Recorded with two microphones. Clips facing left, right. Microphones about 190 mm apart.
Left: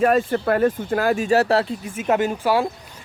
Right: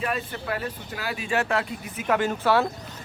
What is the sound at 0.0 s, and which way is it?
Speech, 50° left (ahead or behind).